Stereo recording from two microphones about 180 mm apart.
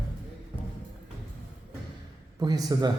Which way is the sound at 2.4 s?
20° right (ahead or behind).